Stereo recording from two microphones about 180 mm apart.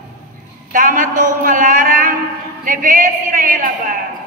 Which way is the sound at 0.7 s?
50° right (ahead or behind).